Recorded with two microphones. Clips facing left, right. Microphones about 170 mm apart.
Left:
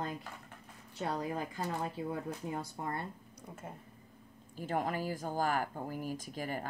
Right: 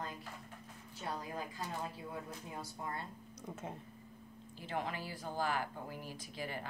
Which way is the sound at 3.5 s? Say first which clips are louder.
Right 3 dB; 5° left (ahead or behind).